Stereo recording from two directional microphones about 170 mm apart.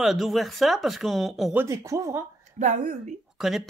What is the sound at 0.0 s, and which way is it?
Speech, centre (ahead or behind).